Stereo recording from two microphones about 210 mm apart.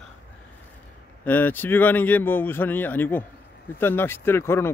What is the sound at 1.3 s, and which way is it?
Speech, 10° left (ahead or behind).